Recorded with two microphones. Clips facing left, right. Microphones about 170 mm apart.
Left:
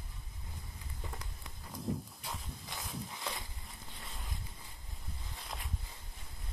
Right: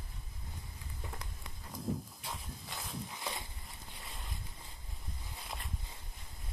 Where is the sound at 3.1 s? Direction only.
15° right (ahead or behind).